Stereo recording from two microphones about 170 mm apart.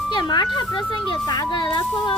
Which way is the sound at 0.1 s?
25° left (ahead or behind).